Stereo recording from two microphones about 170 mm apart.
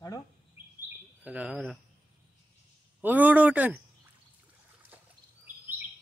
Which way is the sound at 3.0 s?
10° right (ahead or behind).